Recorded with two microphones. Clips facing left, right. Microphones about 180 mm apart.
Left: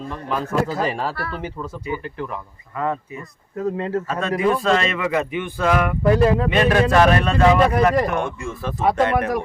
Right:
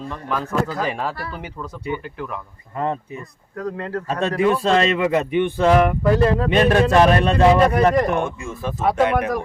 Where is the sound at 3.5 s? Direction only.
20° left (ahead or behind).